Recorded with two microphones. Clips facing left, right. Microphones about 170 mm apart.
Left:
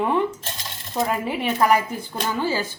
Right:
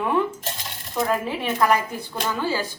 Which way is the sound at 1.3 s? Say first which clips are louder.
Left 2 dB; 10° left (ahead or behind).